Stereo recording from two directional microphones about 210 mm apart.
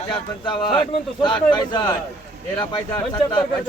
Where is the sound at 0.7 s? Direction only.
20° left (ahead or behind).